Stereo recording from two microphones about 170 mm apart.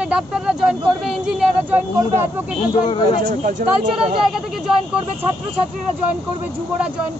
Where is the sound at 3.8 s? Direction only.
30° right (ahead or behind).